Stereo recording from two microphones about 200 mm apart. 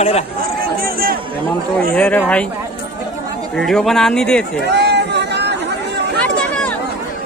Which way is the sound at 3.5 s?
Centre (ahead or behind).